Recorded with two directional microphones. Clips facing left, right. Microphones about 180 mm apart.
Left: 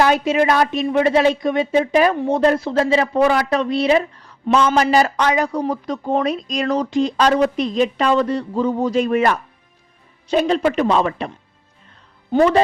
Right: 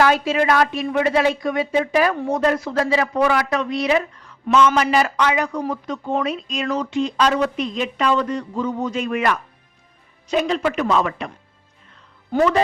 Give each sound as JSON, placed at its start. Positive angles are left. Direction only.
{"t": 0.0, "sound": "speech", "side_deg": 20}
{"t": 12.3, "sound": "speech", "side_deg": 30}